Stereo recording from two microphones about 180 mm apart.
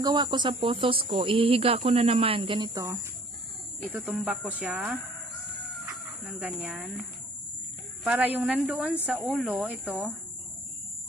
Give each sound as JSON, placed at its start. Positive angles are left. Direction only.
{"t": 0.0, "sound": "speech", "side_deg": -25}
{"t": 6.2, "sound": "speech", "side_deg": -10}
{"t": 8.0, "sound": "speech", "side_deg": -10}